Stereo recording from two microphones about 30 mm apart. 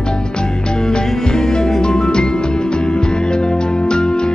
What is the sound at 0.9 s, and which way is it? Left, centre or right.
Music, left.